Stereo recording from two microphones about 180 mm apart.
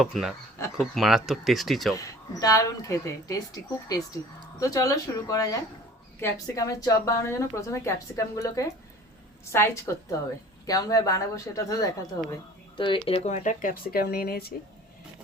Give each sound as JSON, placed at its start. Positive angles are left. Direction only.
{"t": 0.0, "sound": "speech", "side_deg": 0}
{"t": 2.0, "sound": "a woman's voice", "side_deg": 20}